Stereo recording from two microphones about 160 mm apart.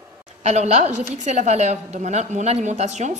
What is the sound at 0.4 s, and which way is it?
A woman's voice, 45° right (ahead or behind).